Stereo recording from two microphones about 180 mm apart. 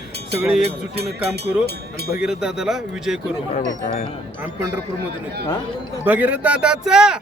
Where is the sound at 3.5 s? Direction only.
45° left (ahead or behind).